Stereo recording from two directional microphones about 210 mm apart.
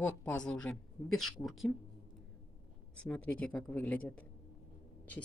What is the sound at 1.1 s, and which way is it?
Speech, 90° left.